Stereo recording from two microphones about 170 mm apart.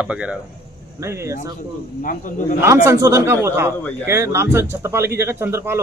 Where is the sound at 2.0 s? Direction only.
50° left (ahead or behind).